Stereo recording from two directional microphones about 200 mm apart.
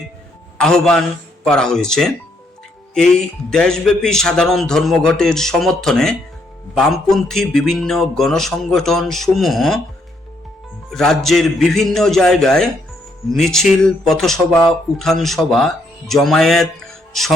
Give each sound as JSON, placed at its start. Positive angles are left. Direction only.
{"t": 0.6, "sound": "speech", "side_deg": 5}
{"t": 10.9, "sound": "speech", "side_deg": 0}